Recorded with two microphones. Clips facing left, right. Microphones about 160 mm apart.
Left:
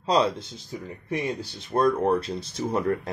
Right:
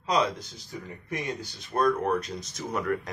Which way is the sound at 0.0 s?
30° left (ahead or behind).